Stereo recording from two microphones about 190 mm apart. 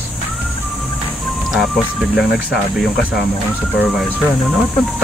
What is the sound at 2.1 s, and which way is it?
Speech, centre (ahead or behind).